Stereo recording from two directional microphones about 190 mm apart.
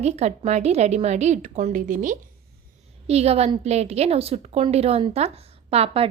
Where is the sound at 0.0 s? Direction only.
35° right (ahead or behind).